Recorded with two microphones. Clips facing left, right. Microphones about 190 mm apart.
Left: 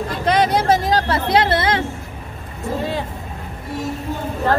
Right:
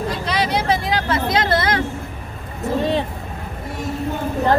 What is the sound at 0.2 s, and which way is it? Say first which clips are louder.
Vehicle: left 8 dB; 50° left (ahead or behind).